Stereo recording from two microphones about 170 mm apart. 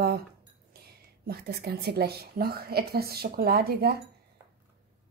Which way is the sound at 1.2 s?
65° right (ahead or behind).